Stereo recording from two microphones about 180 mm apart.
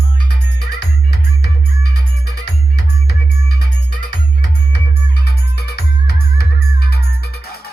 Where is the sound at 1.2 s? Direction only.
65° left (ahead or behind).